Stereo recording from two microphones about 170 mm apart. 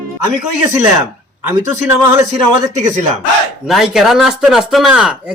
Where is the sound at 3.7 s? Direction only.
Centre (ahead or behind).